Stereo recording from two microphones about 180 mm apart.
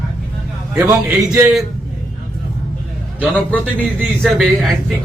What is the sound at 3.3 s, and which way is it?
A man's voice, 10° left (ahead or behind).